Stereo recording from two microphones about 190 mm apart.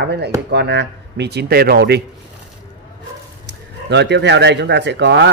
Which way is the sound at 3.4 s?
65° right (ahead or behind).